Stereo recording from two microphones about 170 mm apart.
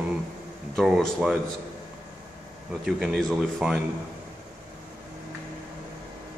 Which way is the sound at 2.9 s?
Centre (ahead or behind).